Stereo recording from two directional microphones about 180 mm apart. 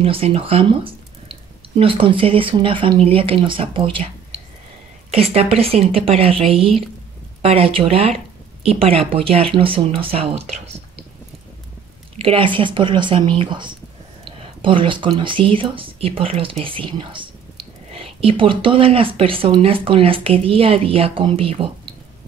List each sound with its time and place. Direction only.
0.0 s speech: 30° right (ahead or behind)
5.1 s speech: 35° right (ahead or behind)
12.2 s speech: 30° right (ahead or behind)